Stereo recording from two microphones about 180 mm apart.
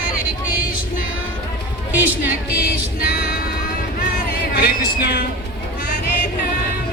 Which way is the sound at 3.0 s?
60° left (ahead or behind).